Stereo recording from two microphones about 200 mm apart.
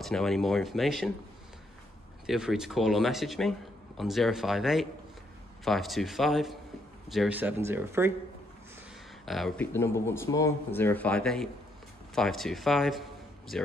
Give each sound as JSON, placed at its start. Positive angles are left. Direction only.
{"t": 0.0, "sound": "speech", "side_deg": 0}
{"t": 2.2, "sound": "speech", "side_deg": -5}
{"t": 9.2, "sound": "speech", "side_deg": 0}
{"t": 9.7, "sound": "speech", "side_deg": 15}